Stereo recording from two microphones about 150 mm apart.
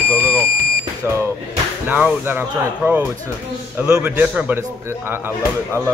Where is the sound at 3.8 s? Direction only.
10° right (ahead or behind).